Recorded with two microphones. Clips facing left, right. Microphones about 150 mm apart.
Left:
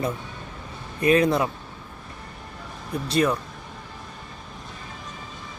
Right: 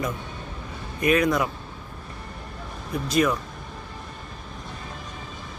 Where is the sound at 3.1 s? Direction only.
35° left (ahead or behind).